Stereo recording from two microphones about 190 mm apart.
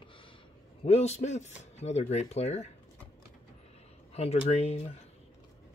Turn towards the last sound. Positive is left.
turn(degrees=35)  # may be behind; listen again after turning